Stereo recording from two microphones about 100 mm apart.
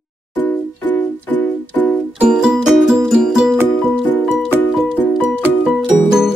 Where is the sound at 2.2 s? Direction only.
10° right (ahead or behind).